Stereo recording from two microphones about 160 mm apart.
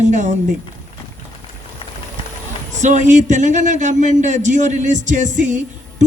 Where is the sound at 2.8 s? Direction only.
50° right (ahead or behind).